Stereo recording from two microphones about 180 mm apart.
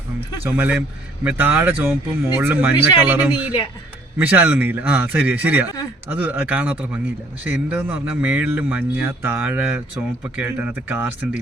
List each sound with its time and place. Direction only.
0.4 s speech: 10° right (ahead or behind)